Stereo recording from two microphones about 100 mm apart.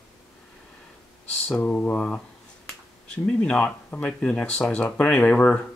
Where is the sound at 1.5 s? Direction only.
15° left (ahead or behind).